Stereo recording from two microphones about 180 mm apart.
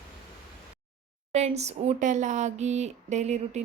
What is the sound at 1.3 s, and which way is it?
A woman's voice, 35° right (ahead or behind).